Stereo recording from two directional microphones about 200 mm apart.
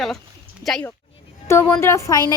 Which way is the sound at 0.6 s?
Centre (ahead or behind).